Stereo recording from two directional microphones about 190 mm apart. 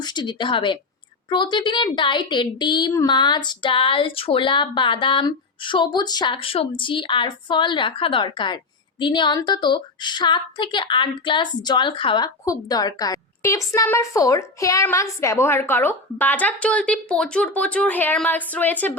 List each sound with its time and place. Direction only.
0.0 s a woman's voice: 25° left (ahead or behind)